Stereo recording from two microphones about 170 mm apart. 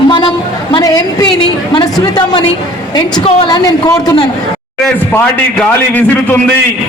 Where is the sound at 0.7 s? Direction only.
25° left (ahead or behind).